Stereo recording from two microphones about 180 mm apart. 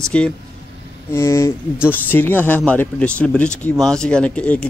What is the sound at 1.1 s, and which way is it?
Speech, 15° left (ahead or behind).